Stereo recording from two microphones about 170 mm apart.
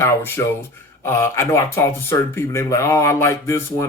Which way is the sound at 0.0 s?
15° left (ahead or behind).